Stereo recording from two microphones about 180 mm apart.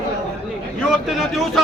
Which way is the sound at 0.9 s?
Centre (ahead or behind).